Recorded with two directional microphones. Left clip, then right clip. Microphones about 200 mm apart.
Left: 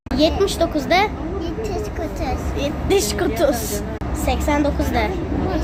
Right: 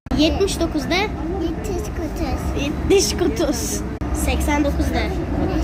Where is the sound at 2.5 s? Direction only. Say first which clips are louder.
Right 2 dB; 15° left (ahead or behind).